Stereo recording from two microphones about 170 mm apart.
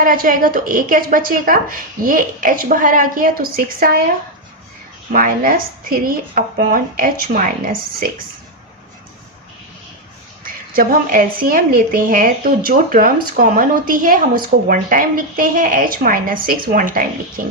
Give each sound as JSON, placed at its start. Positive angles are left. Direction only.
{"t": 0.0, "sound": "a woman's voice", "side_deg": -55}
{"t": 5.1, "sound": "a woman's voice", "side_deg": -55}
{"t": 10.4, "sound": "a woman's voice", "side_deg": -55}